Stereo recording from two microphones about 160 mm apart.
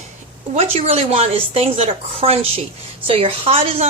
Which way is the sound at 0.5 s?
40° right (ahead or behind).